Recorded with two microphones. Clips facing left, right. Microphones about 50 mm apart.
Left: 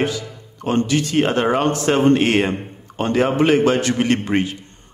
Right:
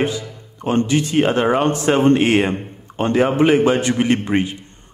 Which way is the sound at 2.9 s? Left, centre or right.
Right.